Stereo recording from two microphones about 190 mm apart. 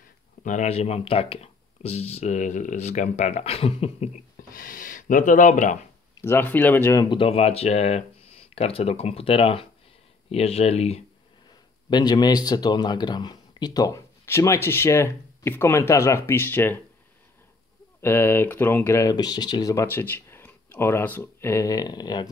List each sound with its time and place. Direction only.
0.4 s speech: 40° left (ahead or behind)
4.5 s speech: 50° left (ahead or behind)
6.2 s speech: 10° left (ahead or behind); by 11.0 s 30° left (ahead or behind)
11.9 s speech: 20° left (ahead or behind)
18.0 s speech: 10° left (ahead or behind)